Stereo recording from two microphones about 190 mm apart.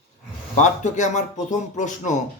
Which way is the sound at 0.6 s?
40° left (ahead or behind).